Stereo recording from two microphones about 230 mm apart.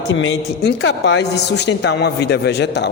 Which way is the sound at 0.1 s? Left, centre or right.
Left.